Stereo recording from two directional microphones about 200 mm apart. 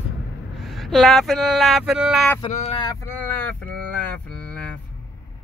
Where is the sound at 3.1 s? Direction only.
10° left (ahead or behind).